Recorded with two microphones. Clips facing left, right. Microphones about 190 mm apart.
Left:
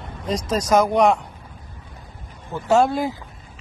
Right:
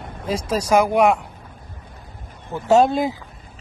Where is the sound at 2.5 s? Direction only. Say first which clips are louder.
Right 2 dB; 20° right (ahead or behind).